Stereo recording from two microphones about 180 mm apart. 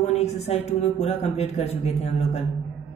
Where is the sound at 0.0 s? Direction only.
35° left (ahead or behind).